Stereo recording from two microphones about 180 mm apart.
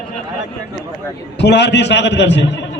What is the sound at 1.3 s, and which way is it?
A man's voice, 70° left (ahead or behind).